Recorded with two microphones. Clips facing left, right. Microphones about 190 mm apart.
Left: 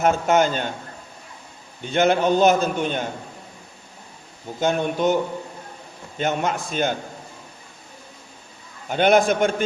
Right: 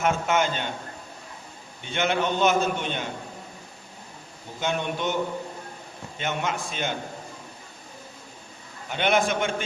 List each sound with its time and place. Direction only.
0.0 s a man's voice: 40° left (ahead or behind)
1.8 s a man's voice: 40° left (ahead or behind)
4.6 s a man's voice: 40° left (ahead or behind)
6.1 s a man's voice: 40° left (ahead or behind)
8.9 s a man's voice: 40° left (ahead or behind)